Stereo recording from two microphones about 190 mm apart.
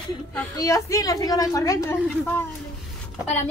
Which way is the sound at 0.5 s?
15° left (ahead or behind).